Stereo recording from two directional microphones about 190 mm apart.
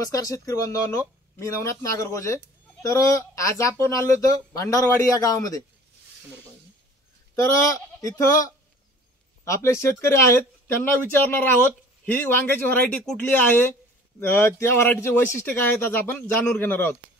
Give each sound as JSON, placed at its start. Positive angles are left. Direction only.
{"t": 0.1, "sound": "speech", "side_deg": 15}
{"t": 8.0, "sound": "speech", "side_deg": 15}